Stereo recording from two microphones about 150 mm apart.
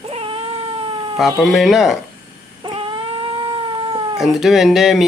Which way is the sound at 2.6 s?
35° right (ahead or behind).